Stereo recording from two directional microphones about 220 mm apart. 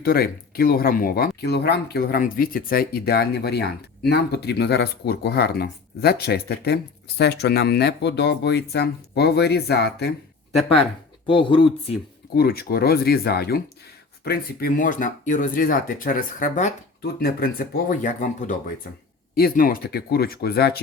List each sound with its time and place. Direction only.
0.0 s speech: 45° left (ahead or behind)
11.3 s speech: 25° left (ahead or behind)
12.3 s speech: 45° left (ahead or behind)